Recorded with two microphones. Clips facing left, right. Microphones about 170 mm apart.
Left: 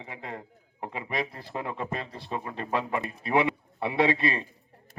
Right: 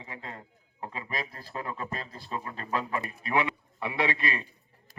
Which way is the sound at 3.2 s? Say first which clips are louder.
Left 4 dB; 25° left (ahead or behind).